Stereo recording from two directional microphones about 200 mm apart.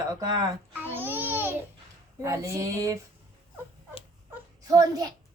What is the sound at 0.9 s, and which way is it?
Babbling, 10° right (ahead or behind).